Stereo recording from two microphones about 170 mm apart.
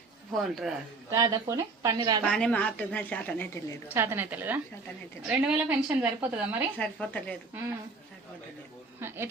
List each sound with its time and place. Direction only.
0.3 s speech: centre (ahead or behind)
1.1 s speech: 20° right (ahead or behind)
2.2 s a woman's voice: 5° left (ahead or behind)
3.8 s a woman's voice: 15° right (ahead or behind)
6.7 s a woman's voice: 5° left (ahead or behind)
9.0 s a woman's voice: 15° right (ahead or behind)